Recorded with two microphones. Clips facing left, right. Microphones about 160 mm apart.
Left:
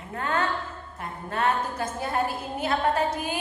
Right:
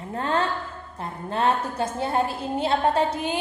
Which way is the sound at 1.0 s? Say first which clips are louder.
Right 3 dB; 30° right (ahead or behind).